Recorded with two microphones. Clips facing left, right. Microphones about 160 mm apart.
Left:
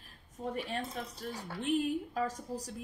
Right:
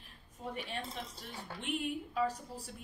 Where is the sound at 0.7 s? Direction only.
40° left (ahead or behind).